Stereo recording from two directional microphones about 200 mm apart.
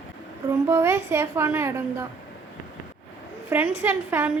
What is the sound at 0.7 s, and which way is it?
A woman's voice, 10° right (ahead or behind).